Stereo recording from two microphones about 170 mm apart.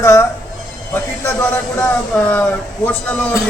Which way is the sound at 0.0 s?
15° left (ahead or behind).